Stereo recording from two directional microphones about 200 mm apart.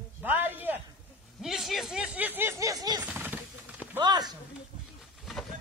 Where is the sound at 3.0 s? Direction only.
5° right (ahead or behind).